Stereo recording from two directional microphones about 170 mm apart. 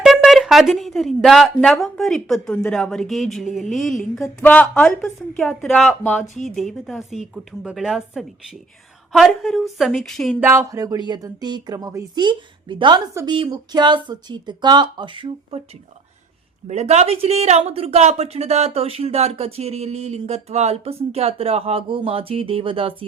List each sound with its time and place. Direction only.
0.0 s speech: centre (ahead or behind)
10.4 s speech: 15° right (ahead or behind)
16.6 s speech: 40° right (ahead or behind)